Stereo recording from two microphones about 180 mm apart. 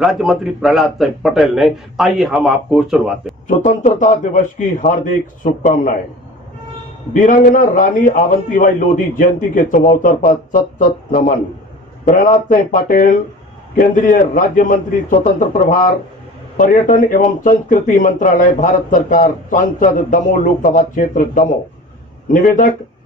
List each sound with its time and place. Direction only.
0.0 s a man's voice: 5° right (ahead or behind)
3.4 s speech: 45° left (ahead or behind)
7.2 s speech: 45° left (ahead or behind)